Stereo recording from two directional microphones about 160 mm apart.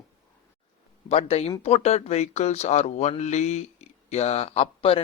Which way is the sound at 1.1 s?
40° left (ahead or behind).